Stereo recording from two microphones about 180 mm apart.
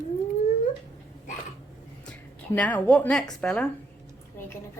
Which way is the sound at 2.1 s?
10° left (ahead or behind).